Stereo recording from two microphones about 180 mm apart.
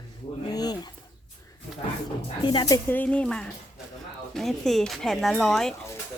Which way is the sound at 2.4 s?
25° left (ahead or behind).